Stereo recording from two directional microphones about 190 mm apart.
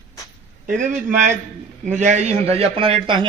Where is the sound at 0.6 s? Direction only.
45° right (ahead or behind).